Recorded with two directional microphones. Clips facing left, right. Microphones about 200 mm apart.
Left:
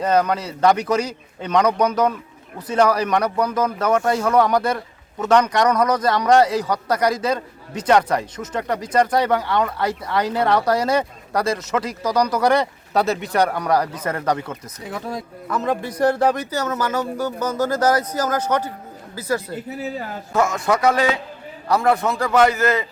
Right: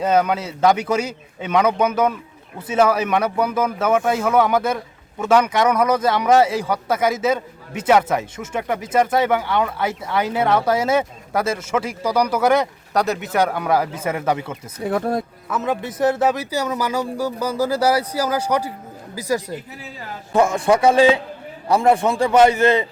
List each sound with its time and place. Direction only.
0.0 s speech: 5° right (ahead or behind)
14.8 s speech: 55° right (ahead or behind)
15.4 s speech: centre (ahead or behind)
20.3 s a man's voice: 30° right (ahead or behind)